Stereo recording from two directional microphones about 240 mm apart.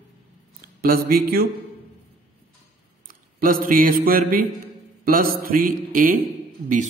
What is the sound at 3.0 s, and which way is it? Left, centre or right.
Speech, right.